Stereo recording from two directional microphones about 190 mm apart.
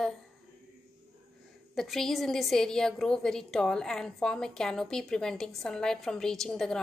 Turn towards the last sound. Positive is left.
turn(degrees=0)  # may be behind; listen again after turning